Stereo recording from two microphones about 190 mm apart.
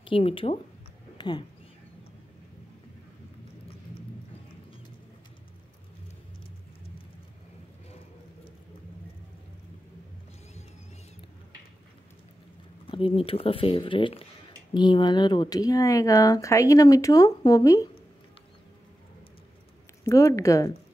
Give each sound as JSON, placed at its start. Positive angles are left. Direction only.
{"t": 0.0, "sound": "speech", "side_deg": 30}
{"t": 1.1, "sound": "a sound", "side_deg": 25}
{"t": 12.9, "sound": "speech", "side_deg": 30}
{"t": 20.1, "sound": "speech", "side_deg": 15}